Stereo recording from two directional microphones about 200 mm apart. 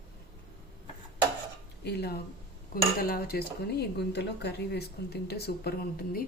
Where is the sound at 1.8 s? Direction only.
55° left (ahead or behind).